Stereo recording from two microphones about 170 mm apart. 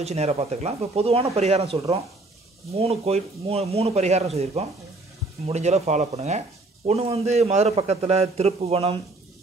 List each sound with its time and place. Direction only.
0.0 s a man's voice: 40° right (ahead or behind)